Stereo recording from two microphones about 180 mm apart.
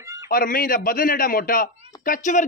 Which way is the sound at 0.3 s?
50° left (ahead or behind).